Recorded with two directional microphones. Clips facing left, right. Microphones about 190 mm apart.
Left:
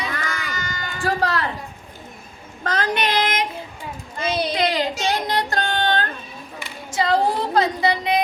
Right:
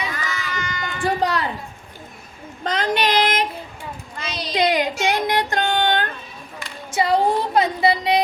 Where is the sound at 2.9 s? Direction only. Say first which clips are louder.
Right 5 dB; 35° right (ahead or behind).